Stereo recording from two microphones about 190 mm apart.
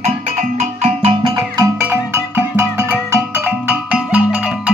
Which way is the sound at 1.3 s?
15° right (ahead or behind).